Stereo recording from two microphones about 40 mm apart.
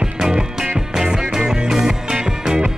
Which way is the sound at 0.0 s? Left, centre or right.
Centre.